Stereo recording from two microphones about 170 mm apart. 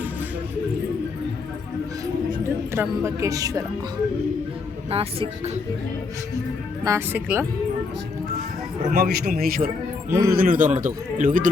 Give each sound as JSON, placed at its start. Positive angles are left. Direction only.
{"t": 2.7, "sound": "a woman's voice", "side_deg": -15}
{"t": 4.9, "sound": "speech", "side_deg": -35}
{"t": 6.8, "sound": "speech", "side_deg": -15}
{"t": 8.9, "sound": "a man's voice", "side_deg": -65}
{"t": 10.1, "sound": "speech", "side_deg": -15}
{"t": 10.3, "sound": "a man's voice", "side_deg": -55}